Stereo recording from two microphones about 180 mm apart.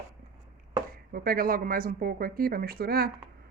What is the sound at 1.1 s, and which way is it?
Speech, 55° right (ahead or behind).